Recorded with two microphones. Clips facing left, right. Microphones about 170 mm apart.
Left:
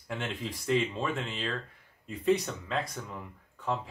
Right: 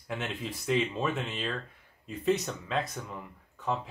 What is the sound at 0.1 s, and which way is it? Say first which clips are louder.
Speech: even; 5° right (ahead or behind).